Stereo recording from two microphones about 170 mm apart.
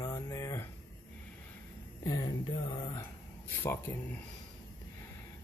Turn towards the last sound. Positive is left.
turn(degrees=15)  # may be behind; listen again after turning